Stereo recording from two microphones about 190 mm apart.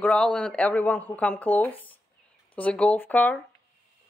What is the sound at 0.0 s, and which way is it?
Speech, 5° left (ahead or behind).